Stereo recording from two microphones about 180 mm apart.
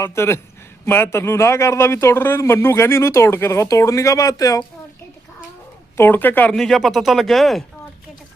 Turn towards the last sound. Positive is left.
turn(degrees=0)  # may be behind; listen again after turning